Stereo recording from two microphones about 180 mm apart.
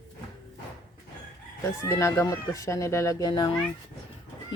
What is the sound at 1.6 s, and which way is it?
Speech, 15° left (ahead or behind).